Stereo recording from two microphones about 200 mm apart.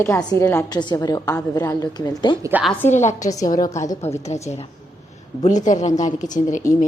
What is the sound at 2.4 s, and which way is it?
Speech, 10° right (ahead or behind).